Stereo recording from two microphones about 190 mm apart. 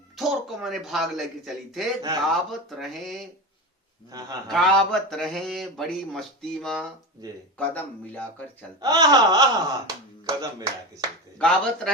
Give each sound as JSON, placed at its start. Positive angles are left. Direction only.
{"t": 0.2, "sound": "speech", "side_deg": 0}
{"t": 4.4, "sound": "a man's voice", "side_deg": 0}
{"t": 8.8, "sound": "speech", "side_deg": -20}
{"t": 10.9, "sound": "speech", "side_deg": 5}